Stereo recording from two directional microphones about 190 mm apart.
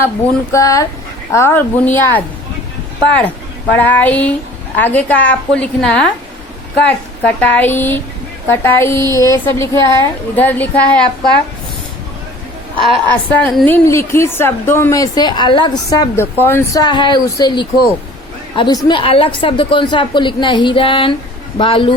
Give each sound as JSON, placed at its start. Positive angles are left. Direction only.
{"t": 0.5, "sound": "a woman's voice", "side_deg": 15}
{"t": 7.3, "sound": "a woman's voice", "side_deg": 10}
{"t": 12.7, "sound": "a woman's voice", "side_deg": -25}
{"t": 13.1, "sound": "a woman's voice", "side_deg": 10}